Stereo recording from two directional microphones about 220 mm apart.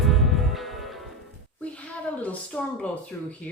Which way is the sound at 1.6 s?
5° left (ahead or behind).